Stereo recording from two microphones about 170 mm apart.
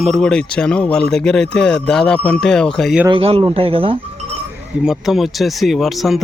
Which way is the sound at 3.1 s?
30° right (ahead or behind).